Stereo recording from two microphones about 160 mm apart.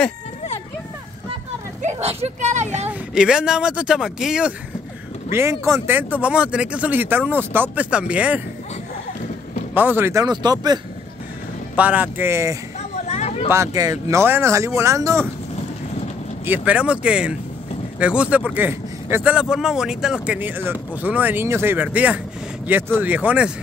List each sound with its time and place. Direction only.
1.8 s speech: 45° right (ahead or behind)
2.9 s speech: 5° right (ahead or behind)
5.3 s speech: 15° right (ahead or behind)
9.8 s speech: 15° right (ahead or behind)
10.2 s speech: 25° right (ahead or behind)
11.7 s speech: 10° right (ahead or behind)
13.1 s a sound: 45° left (ahead or behind)
13.5 s speech: 20° right (ahead or behind)
16.4 s speech: 10° right (ahead or behind)